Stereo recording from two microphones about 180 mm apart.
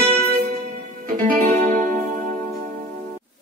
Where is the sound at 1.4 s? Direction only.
45° right (ahead or behind).